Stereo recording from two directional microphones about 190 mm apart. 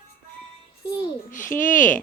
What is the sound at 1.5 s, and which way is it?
Speech, 10° left (ahead or behind).